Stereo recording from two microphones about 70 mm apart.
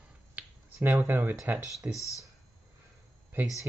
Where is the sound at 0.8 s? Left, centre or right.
Right.